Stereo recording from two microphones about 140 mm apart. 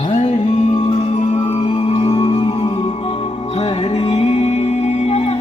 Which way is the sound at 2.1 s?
35° left (ahead or behind).